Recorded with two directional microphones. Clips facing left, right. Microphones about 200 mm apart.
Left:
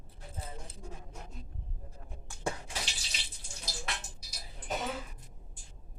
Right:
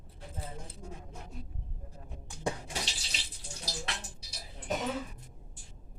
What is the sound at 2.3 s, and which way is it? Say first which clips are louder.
Dishes: right 4 dB; 15° right (ahead or behind).